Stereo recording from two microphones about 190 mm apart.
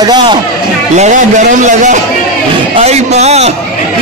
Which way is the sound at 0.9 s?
40° right (ahead or behind).